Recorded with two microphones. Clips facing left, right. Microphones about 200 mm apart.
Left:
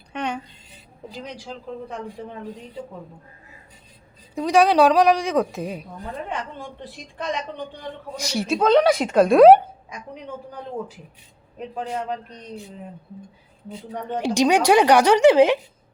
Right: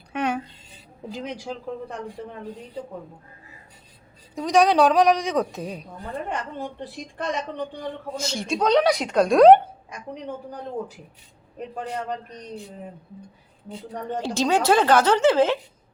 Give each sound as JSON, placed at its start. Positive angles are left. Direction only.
{"t": 0.1, "sound": "a sound", "side_deg": -5}
{"t": 4.4, "sound": "a woman's voice", "side_deg": 0}
{"t": 7.2, "sound": "a woman's voice", "side_deg": -45}
{"t": 8.1, "sound": "a woman's voice", "side_deg": 10}
{"t": 14.1, "sound": "a woman's voice", "side_deg": 15}